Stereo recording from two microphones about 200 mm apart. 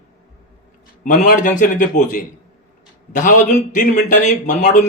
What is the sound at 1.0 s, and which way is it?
A man's voice, 40° left (ahead or behind).